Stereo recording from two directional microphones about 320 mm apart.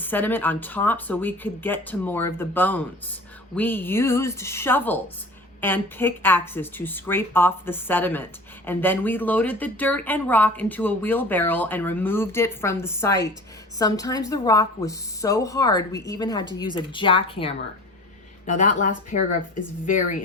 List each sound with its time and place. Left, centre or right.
0.0 s speech: centre; by 18.9 s left